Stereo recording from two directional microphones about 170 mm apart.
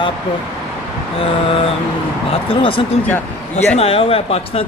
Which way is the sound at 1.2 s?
35° left (ahead or behind).